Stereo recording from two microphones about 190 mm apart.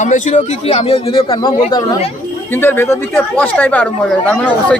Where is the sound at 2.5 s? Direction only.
10° left (ahead or behind).